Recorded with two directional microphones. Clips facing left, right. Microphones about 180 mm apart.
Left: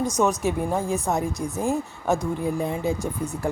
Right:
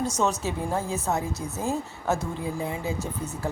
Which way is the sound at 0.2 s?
15° left (ahead or behind).